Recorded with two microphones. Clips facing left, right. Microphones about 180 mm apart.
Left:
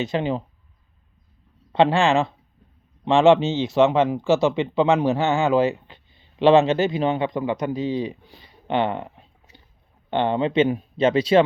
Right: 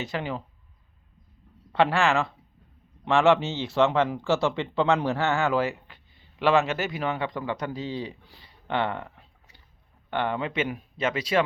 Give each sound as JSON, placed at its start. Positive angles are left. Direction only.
{"t": 0.0, "sound": "speech", "side_deg": 25}
{"t": 1.7, "sound": "speech", "side_deg": 25}